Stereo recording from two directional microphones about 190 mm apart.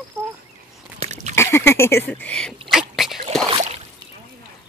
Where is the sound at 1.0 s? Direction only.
35° right (ahead or behind).